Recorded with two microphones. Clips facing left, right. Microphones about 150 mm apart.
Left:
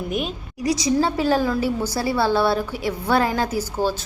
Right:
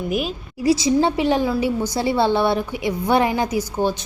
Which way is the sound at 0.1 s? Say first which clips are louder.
Right 3 dB; 5° right (ahead or behind).